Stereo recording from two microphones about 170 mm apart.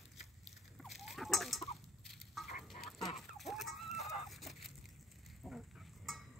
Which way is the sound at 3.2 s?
Centre (ahead or behind).